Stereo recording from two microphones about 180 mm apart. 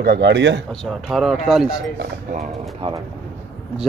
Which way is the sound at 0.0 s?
70° right (ahead or behind).